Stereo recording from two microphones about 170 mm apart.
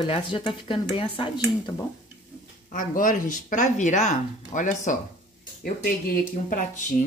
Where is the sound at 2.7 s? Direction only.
50° left (ahead or behind).